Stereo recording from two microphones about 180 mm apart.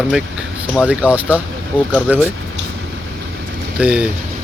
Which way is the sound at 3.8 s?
5° right (ahead or behind).